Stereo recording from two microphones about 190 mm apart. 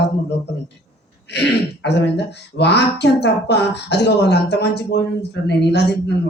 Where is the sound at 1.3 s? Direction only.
60° left (ahead or behind).